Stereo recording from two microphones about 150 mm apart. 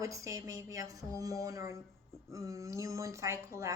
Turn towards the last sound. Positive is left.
turn(degrees=-20)  # may be behind; listen again after turning